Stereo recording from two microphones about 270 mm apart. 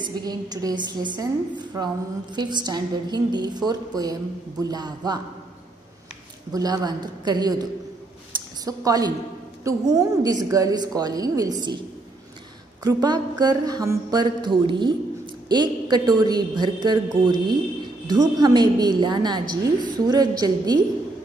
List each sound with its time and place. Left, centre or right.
0.0 s a woman's voice: centre
6.5 s a woman's voice: centre
8.6 s a woman's voice: centre
12.8 s a woman's voice: centre